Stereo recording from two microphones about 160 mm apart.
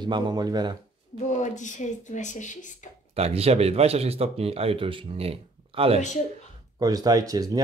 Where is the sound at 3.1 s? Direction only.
40° right (ahead or behind).